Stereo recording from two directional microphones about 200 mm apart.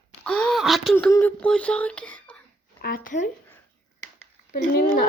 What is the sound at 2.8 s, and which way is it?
Speech, 45° left (ahead or behind).